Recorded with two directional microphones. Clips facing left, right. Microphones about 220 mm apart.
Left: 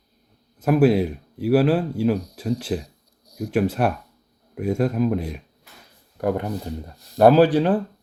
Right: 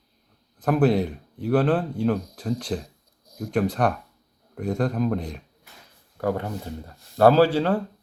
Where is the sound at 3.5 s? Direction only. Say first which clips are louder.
Left 2 dB; 5° left (ahead or behind).